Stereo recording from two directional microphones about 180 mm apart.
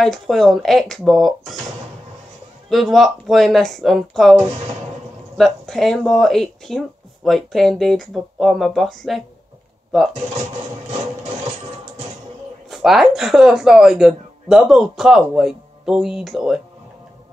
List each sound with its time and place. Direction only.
0.0 s a woman's voice: centre (ahead or behind)
2.7 s a woman's voice: centre (ahead or behind)
5.4 s a woman's voice: centre (ahead or behind)
12.6 s a woman's voice: centre (ahead or behind)